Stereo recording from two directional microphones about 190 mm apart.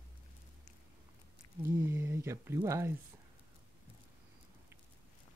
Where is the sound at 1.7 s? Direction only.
10° right (ahead or behind).